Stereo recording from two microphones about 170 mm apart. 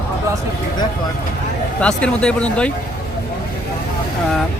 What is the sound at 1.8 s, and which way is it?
Speech, 5° left (ahead or behind).